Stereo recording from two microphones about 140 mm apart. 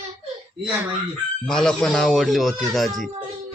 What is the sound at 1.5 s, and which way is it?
Speech, 5° left (ahead or behind).